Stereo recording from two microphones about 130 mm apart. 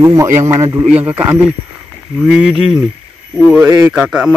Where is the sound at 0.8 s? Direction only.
10° right (ahead or behind).